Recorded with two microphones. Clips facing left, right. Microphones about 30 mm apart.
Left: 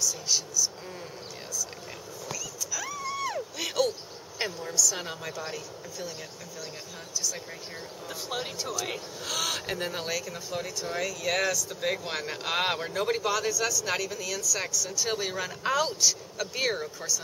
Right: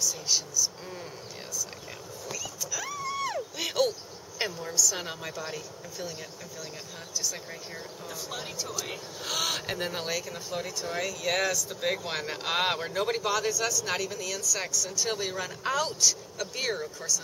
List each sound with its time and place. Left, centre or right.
0.0 s speech: centre
2.7 s a sound: centre
4.4 s speech: centre
8.1 s speech: left
9.2 s speech: centre